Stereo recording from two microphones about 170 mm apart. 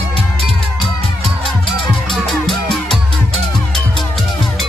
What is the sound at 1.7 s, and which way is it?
Music, centre (ahead or behind).